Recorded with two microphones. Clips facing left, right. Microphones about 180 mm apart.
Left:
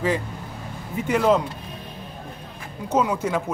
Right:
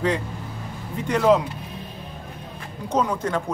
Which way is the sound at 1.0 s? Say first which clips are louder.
Right 1 dB; centre (ahead or behind).